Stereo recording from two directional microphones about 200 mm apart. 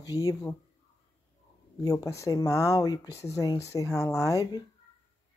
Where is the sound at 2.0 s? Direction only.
15° left (ahead or behind).